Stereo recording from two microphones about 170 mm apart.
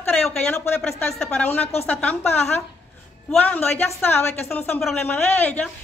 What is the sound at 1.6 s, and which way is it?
Speech, 35° left (ahead or behind).